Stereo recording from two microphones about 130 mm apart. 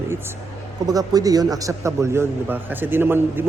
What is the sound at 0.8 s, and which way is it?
A man's voice, 30° right (ahead or behind).